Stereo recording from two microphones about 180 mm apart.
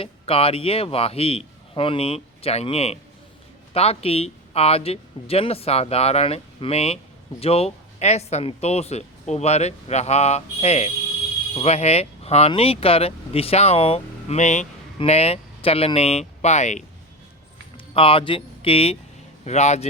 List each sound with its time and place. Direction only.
0.0 s speech: 30° left (ahead or behind)
17.9 s speech: 30° left (ahead or behind)